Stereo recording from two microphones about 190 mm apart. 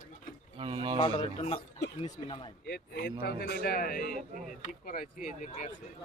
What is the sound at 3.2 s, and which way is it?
A man's voice, 55° left (ahead or behind).